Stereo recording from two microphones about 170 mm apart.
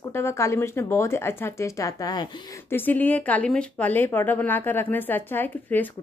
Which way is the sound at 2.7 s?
10° left (ahead or behind).